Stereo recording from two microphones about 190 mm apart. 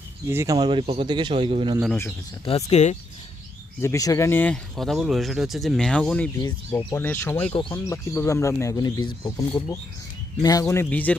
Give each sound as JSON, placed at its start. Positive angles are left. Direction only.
{"t": 0.3, "sound": "a man's voice", "side_deg": -15}
{"t": 2.4, "sound": "speech", "side_deg": 30}
{"t": 3.8, "sound": "speech", "side_deg": 15}